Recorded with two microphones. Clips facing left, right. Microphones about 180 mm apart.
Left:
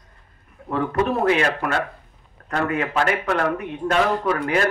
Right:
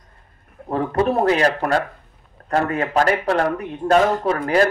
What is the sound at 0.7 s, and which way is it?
Speech, 35° right (ahead or behind).